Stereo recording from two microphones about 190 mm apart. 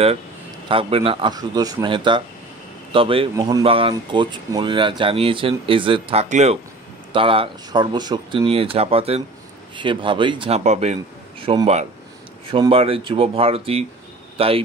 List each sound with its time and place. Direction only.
0.7 s speech: 30° right (ahead or behind)
10.6 s speech: 35° right (ahead or behind)